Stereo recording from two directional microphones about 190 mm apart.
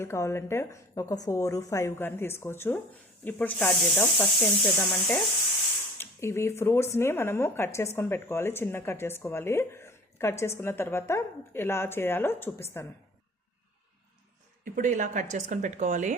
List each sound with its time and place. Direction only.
0.0 s a woman's voice: 15° left (ahead or behind)
14.6 s speech: 40° right (ahead or behind)